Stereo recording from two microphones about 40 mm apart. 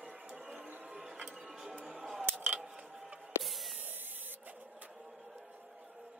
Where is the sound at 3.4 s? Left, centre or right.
Centre.